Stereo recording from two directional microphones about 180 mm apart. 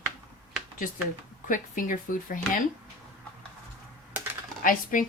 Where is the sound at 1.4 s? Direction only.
45° left (ahead or behind).